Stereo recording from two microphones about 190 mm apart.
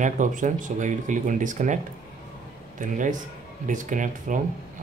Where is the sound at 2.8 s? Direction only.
45° right (ahead or behind).